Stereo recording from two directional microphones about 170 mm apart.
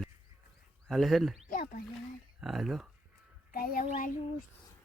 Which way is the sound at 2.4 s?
Centre (ahead or behind).